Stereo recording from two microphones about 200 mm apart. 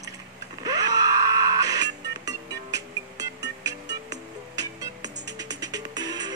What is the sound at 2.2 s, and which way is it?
Music, 15° right (ahead or behind).